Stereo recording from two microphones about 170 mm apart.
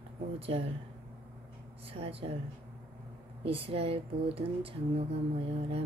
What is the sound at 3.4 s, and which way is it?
Speech, 35° right (ahead or behind).